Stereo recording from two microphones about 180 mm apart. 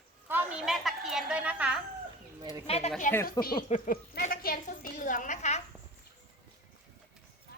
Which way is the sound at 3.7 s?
50° left (ahead or behind).